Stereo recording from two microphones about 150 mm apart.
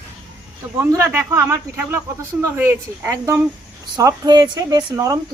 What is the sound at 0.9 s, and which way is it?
A woman's voice, 15° right (ahead or behind).